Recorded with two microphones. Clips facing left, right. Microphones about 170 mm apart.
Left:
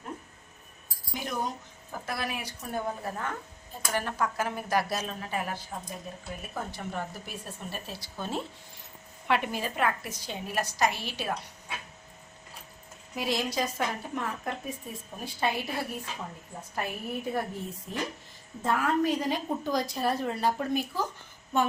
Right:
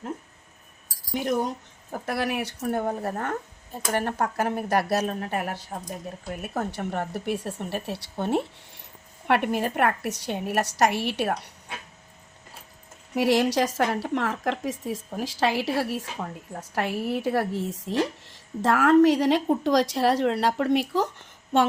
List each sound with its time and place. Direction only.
0.9 s chink: 60° right (ahead or behind)
1.9 s a woman's voice: 65° right (ahead or behind)
2.6 s speech: 55° right (ahead or behind)
3.9 s a woman's voice: 60° right (ahead or behind)
13.1 s a woman's voice: 75° right (ahead or behind)
21.5 s a woman's voice: 85° right